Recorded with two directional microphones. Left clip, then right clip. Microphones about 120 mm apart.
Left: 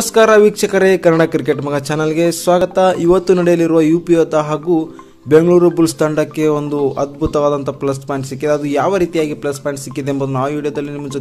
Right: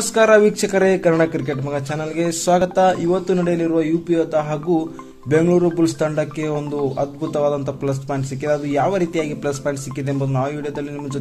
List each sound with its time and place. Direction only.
0.1 s a man's voice: 25° left (ahead or behind)
3.0 s a man's voice: 50° left (ahead or behind)
4.5 s a man's voice: 20° left (ahead or behind)
5.3 s a man's voice: 30° left (ahead or behind)
9.9 s a man's voice: 35° left (ahead or behind)